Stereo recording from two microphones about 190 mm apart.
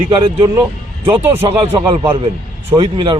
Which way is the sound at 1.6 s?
25° right (ahead or behind).